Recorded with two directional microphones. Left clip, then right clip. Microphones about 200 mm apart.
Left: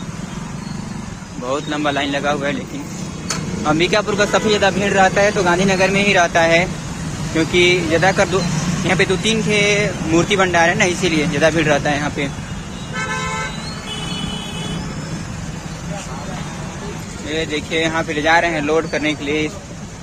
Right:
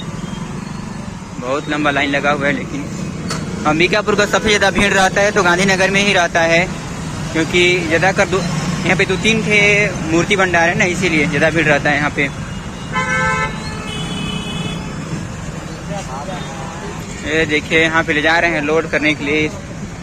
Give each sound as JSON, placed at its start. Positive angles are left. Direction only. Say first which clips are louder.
{"t": 1.5, "sound": "speech", "louder": "right 3 dB", "side_deg": 15}
{"t": 3.6, "sound": "a man's voice", "louder": "right 2 dB", "side_deg": 5}
{"t": 17.3, "sound": "speech", "louder": "right 6 dB", "side_deg": 0}